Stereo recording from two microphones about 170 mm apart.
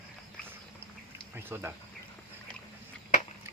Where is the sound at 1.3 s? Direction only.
15° right (ahead or behind).